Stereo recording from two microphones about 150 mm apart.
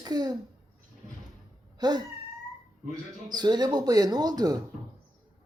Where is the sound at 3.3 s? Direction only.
30° right (ahead or behind).